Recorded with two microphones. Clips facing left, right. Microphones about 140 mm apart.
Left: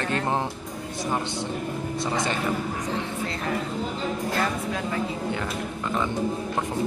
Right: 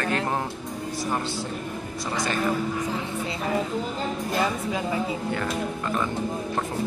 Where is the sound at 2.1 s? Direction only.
25° left (ahead or behind).